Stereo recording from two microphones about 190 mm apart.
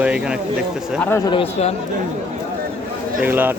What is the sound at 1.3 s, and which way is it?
Speech, 30° left (ahead or behind).